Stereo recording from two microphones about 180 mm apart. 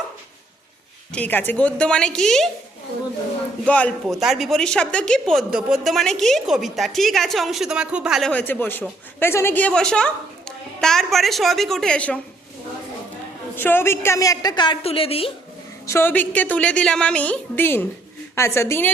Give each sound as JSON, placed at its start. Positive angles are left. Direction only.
{"t": 1.1, "sound": "a woman's voice", "side_deg": 10}
{"t": 3.7, "sound": "a woman's voice", "side_deg": 5}
{"t": 8.3, "sound": "a woman's voice", "side_deg": 10}
{"t": 13.6, "sound": "a woman's voice", "side_deg": 10}
{"t": 15.9, "sound": "a woman's voice", "side_deg": 10}